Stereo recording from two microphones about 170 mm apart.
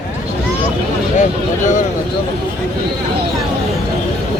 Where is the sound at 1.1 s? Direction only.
45° left (ahead or behind).